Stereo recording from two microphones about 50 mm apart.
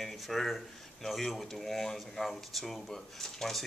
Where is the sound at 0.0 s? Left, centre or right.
Centre.